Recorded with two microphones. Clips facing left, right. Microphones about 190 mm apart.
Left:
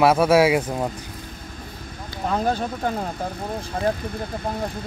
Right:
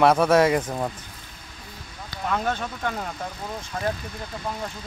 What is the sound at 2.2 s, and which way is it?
Speech, 35° left (ahead or behind).